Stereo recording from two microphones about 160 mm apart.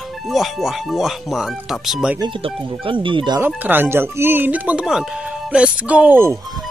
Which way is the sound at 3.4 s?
10° right (ahead or behind).